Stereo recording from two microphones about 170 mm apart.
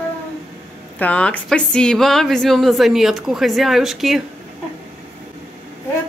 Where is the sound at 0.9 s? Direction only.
10° left (ahead or behind).